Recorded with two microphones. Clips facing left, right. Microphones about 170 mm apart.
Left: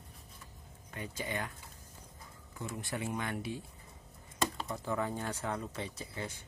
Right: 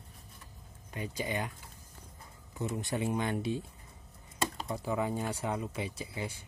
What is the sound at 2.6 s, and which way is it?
Speech, 25° right (ahead or behind).